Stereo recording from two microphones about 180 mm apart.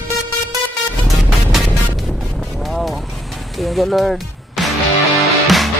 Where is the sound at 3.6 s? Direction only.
Centre (ahead or behind).